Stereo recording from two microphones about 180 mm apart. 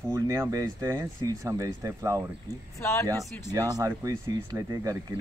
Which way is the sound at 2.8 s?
15° left (ahead or behind).